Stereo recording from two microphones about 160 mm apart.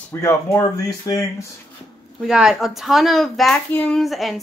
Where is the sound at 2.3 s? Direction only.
5° right (ahead or behind).